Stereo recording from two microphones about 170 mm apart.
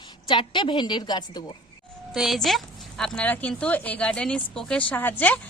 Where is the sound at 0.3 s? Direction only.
30° left (ahead or behind).